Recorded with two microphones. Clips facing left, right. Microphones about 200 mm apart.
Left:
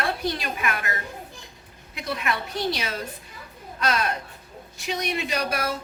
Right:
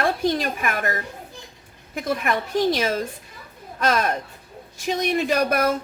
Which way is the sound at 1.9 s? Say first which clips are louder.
Right 5 dB; 50° right (ahead or behind).